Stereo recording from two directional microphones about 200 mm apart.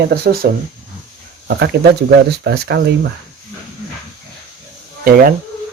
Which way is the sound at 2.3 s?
55° right (ahead or behind).